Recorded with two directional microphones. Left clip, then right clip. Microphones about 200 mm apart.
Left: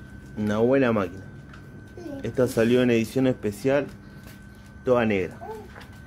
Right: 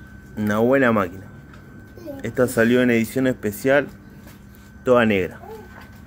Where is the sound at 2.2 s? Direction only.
Centre (ahead or behind).